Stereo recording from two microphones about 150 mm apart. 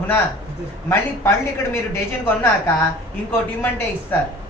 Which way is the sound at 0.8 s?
15° left (ahead or behind).